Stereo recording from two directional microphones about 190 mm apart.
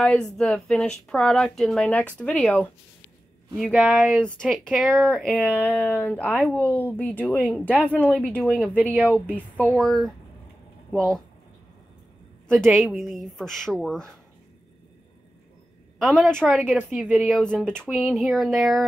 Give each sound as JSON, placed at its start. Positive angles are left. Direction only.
{"t": 0.0, "sound": "speech", "side_deg": 5}
{"t": 12.6, "sound": "speech", "side_deg": -5}
{"t": 16.0, "sound": "speech", "side_deg": 0}